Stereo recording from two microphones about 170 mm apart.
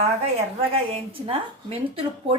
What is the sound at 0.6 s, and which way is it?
Speech, 35° right (ahead or behind).